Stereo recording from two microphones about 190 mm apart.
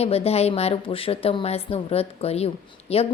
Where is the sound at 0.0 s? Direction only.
30° left (ahead or behind).